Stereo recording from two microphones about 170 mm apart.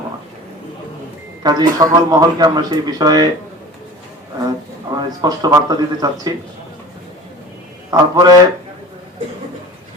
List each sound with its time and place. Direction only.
1.4 s speech: 25° right (ahead or behind)
4.9 s speech: 25° right (ahead or behind)
7.9 s speech: 20° right (ahead or behind)